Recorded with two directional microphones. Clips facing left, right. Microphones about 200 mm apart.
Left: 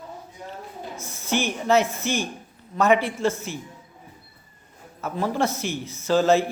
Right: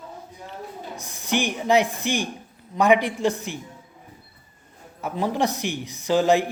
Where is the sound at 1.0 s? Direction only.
15° right (ahead or behind).